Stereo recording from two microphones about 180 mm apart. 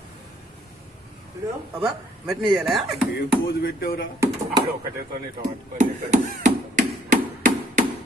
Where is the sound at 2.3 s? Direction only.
5° right (ahead or behind).